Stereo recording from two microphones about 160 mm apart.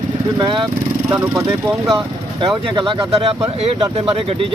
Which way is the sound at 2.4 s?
30° right (ahead or behind).